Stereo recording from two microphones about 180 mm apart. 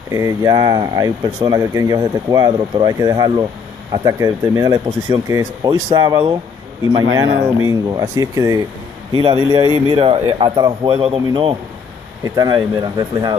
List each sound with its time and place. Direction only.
0.1 s speech: 15° right (ahead or behind)
7.6 s speech: 20° right (ahead or behind)
9.1 s speech: 30° right (ahead or behind)